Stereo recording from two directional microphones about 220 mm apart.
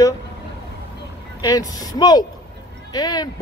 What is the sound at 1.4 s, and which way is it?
Speech, 15° left (ahead or behind).